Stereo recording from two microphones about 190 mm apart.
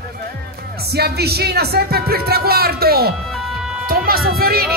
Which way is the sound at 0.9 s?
55° right (ahead or behind).